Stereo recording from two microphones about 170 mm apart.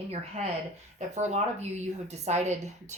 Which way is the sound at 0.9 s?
40° right (ahead or behind).